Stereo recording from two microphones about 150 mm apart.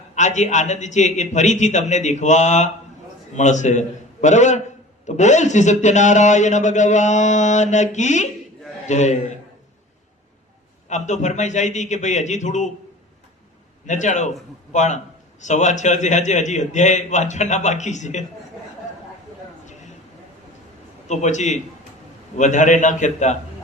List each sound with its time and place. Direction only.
0.2 s a man's voice: 50° left (ahead or behind)
10.8 s a man's voice: 50° left (ahead or behind)
13.8 s a man's voice: 55° left (ahead or behind)
21.1 s a man's voice: 50° left (ahead or behind)